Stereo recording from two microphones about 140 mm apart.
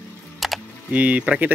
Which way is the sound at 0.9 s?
10° right (ahead or behind).